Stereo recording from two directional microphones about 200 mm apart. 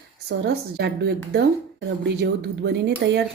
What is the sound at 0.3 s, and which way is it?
Speech, 55° right (ahead or behind).